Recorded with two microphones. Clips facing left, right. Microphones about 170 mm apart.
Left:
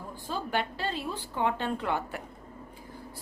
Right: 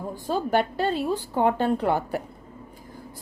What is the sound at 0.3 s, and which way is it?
A woman's voice, 45° right (ahead or behind).